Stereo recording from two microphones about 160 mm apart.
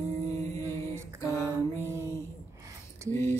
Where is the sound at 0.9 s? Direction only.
15° right (ahead or behind).